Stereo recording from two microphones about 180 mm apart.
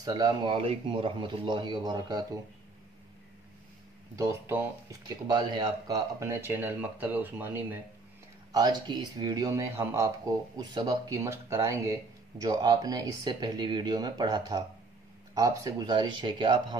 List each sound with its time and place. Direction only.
0.0 s speech: 20° right (ahead or behind)
4.2 s speech: 15° right (ahead or behind)
8.5 s speech: 20° right (ahead or behind)